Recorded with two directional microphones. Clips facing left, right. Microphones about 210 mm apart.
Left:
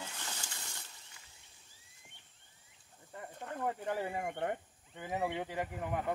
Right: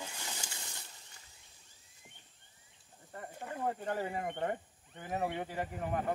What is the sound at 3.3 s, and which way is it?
Snake, 10° right (ahead or behind).